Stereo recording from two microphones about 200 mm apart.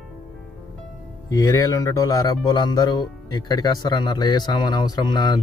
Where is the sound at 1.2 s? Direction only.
15° left (ahead or behind).